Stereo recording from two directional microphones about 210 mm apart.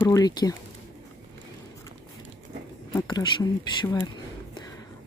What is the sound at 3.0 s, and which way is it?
Speech, 20° left (ahead or behind).